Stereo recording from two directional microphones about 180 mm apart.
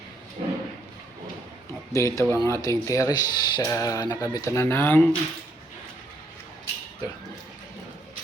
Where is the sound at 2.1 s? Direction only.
15° left (ahead or behind).